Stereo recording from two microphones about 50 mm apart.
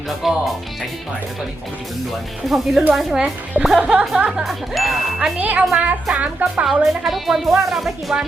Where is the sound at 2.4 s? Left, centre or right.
Centre.